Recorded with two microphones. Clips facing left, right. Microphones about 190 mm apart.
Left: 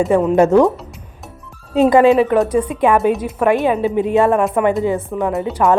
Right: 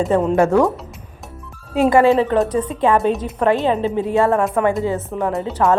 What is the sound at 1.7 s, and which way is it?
Speech, 20° left (ahead or behind).